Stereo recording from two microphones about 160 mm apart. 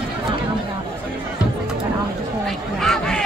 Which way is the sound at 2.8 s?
5° left (ahead or behind).